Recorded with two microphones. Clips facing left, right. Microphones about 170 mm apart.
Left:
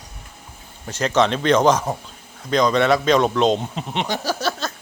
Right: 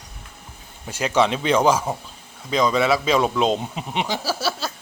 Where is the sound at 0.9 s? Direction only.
10° right (ahead or behind).